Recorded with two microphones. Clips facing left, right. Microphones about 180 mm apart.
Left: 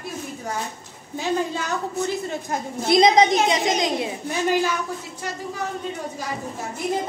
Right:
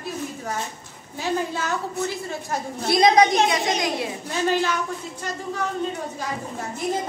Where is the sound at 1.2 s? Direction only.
15° left (ahead or behind).